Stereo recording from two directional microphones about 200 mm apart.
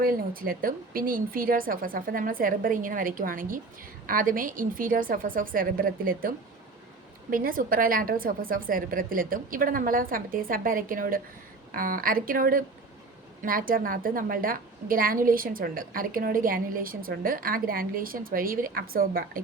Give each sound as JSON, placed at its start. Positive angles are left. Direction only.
{"t": 0.0, "sound": "a woman's voice", "side_deg": -45}